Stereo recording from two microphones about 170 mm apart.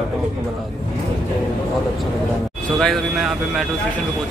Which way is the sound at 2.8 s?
Centre (ahead or behind).